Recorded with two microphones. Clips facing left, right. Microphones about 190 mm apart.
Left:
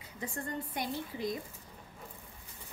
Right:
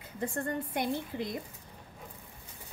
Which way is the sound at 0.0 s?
55° right (ahead or behind).